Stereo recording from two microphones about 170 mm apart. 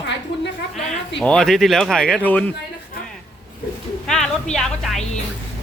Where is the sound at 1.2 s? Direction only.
5° left (ahead or behind).